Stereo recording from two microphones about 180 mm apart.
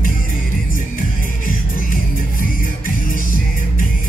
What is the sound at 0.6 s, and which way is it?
Music, 50° left (ahead or behind).